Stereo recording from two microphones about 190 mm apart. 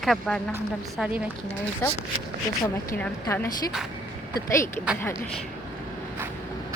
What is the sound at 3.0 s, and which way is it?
A woman's voice, 10° left (ahead or behind).